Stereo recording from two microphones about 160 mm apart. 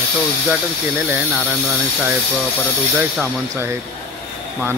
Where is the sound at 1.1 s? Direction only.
5° right (ahead or behind).